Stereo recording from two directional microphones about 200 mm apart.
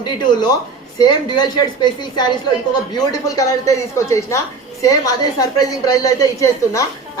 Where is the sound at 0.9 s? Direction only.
20° left (ahead or behind).